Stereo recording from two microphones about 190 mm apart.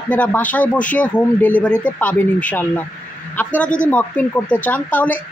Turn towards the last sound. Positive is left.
turn(degrees=10)  # may be behind; listen again after turning